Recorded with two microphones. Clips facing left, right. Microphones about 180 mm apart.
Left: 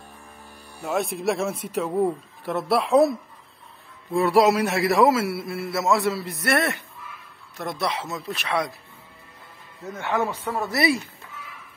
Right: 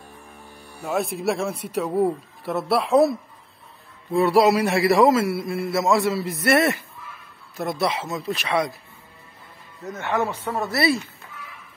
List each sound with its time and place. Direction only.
0.8 s a man's voice: centre (ahead or behind)
1.9 s speech: 10° right (ahead or behind)
2.4 s a man's voice: centre (ahead or behind)
10.1 s speech: 5° right (ahead or behind)
10.7 s speech: 15° left (ahead or behind)